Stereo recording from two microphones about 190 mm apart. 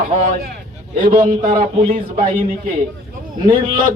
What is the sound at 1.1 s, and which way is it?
Speech, 40° right (ahead or behind).